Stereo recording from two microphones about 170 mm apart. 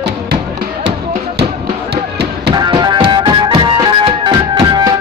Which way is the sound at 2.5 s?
25° right (ahead or behind).